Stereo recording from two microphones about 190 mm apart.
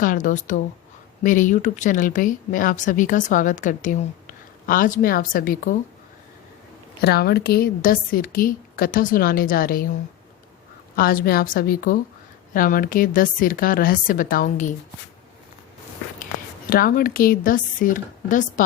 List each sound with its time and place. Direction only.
0.0 s speech: 45° left (ahead or behind)
7.0 s speech: 55° left (ahead or behind)
10.9 s speech: 50° left (ahead or behind)
16.6 s speech: 50° left (ahead or behind)